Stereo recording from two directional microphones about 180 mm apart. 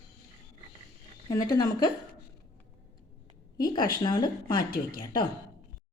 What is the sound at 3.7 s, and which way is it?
Speech, 25° left (ahead or behind).